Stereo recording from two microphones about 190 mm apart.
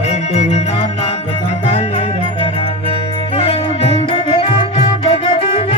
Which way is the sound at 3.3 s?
30° left (ahead or behind).